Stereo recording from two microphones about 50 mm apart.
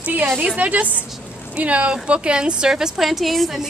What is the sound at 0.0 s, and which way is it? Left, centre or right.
A woman's voice, right.